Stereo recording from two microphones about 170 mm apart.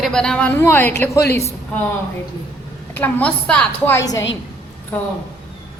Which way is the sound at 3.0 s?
10° left (ahead or behind).